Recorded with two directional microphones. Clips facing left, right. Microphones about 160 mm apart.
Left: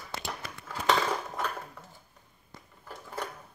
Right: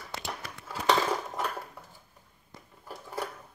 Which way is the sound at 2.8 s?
10° right (ahead or behind).